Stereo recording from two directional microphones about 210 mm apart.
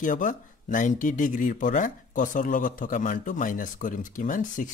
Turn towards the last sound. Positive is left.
turn(degrees=40)  # may be behind; listen again after turning